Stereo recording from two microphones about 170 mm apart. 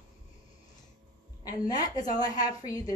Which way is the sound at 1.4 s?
25° left (ahead or behind).